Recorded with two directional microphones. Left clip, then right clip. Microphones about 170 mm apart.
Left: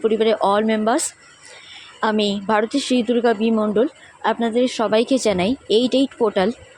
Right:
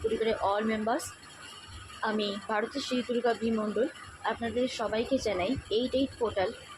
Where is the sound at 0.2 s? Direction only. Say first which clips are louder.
Left 11 dB; 55° left (ahead or behind).